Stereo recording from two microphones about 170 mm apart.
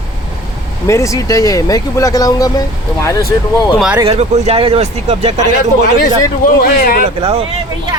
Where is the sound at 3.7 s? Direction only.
5° right (ahead or behind).